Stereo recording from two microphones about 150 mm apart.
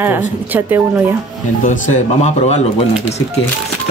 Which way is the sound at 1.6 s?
55° left (ahead or behind).